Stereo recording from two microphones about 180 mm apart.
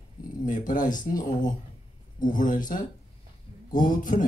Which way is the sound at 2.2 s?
45° left (ahead or behind).